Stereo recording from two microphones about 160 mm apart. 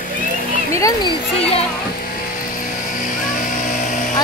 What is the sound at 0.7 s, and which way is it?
Speech, 20° left (ahead or behind).